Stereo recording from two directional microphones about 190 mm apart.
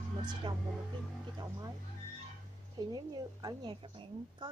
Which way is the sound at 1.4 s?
20° right (ahead or behind).